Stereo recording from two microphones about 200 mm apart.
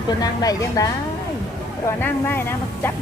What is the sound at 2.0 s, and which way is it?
Speech, 10° left (ahead or behind).